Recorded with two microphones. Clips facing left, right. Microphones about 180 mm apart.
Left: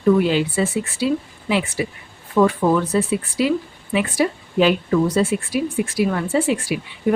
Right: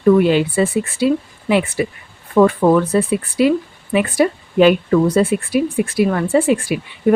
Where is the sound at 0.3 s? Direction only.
55° right (ahead or behind).